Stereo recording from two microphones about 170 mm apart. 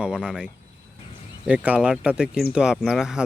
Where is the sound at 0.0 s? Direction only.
5° right (ahead or behind).